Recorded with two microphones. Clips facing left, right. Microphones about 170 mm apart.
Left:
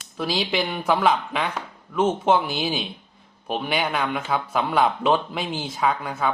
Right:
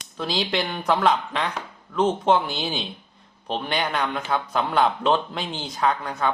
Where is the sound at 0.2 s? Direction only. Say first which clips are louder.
Left 1 dB; 5° left (ahead or behind).